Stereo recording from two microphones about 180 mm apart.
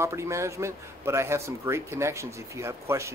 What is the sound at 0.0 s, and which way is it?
Speech, 15° right (ahead or behind).